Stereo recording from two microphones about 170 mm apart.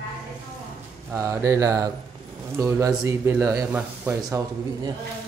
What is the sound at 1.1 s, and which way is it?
Speech, 15° right (ahead or behind).